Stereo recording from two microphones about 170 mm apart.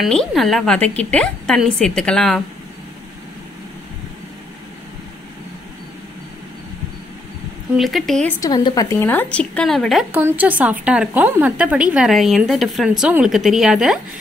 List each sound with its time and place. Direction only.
0.0 s a woman's voice: centre (ahead or behind)
7.7 s a woman's voice: centre (ahead or behind)
8.4 s speech: 20° left (ahead or behind)
9.1 s a woman's voice: 10° left (ahead or behind)
10.1 s a woman's voice: 10° right (ahead or behind)